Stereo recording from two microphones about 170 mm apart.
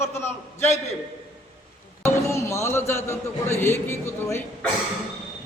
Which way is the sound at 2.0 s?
15° left (ahead or behind).